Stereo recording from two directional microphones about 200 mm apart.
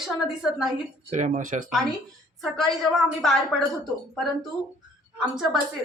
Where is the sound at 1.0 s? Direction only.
40° right (ahead or behind).